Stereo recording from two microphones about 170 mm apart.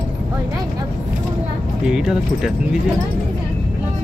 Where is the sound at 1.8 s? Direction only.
5° right (ahead or behind).